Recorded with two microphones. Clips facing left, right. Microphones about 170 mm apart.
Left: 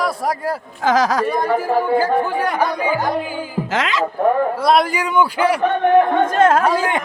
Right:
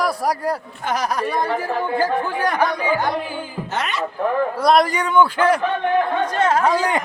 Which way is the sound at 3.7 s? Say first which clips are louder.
Left 4 dB; 90° left.